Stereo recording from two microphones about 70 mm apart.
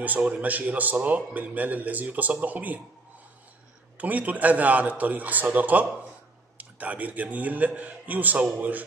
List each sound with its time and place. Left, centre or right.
0.0 s a man's voice: right
4.0 s a man's voice: right